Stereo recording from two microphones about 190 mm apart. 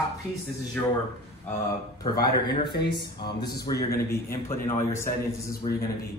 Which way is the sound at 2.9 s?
25° left (ahead or behind).